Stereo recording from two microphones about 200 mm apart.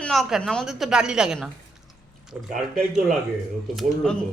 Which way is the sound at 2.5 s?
Centre (ahead or behind).